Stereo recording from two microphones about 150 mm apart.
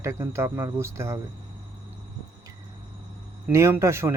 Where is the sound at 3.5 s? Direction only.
20° right (ahead or behind).